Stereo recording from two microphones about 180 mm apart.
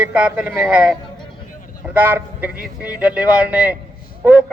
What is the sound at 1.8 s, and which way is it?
Vehicle, 10° right (ahead or behind).